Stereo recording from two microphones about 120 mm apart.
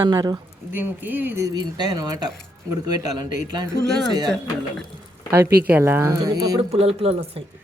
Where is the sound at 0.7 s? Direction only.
15° right (ahead or behind); by 3.7 s 35° right (ahead or behind).